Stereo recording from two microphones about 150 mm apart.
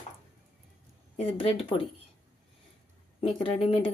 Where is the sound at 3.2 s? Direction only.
40° left (ahead or behind).